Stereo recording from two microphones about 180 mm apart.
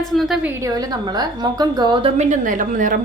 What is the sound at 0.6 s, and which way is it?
A woman's voice, 20° right (ahead or behind).